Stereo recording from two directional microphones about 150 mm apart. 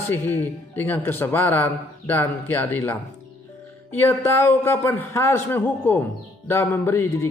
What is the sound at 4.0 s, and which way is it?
Speech, 20° left (ahead or behind).